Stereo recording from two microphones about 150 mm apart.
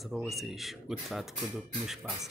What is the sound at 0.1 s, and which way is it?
Speech, centre (ahead or behind).